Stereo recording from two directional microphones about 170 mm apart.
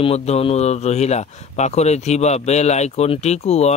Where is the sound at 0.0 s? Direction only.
35° left (ahead or behind).